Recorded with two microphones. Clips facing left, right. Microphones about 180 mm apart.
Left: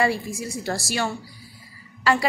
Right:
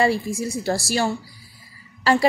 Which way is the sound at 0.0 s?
30° right (ahead or behind).